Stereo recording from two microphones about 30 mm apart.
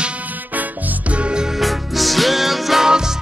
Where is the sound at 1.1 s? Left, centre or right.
Right.